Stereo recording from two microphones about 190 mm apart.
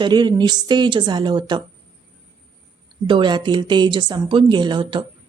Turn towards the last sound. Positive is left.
turn(degrees=-25)  # may be behind; listen again after turning